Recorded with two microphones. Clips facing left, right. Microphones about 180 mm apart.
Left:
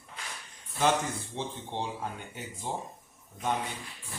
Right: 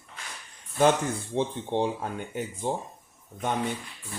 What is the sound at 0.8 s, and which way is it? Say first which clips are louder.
Speech: right 5 dB; 55° right (ahead or behind).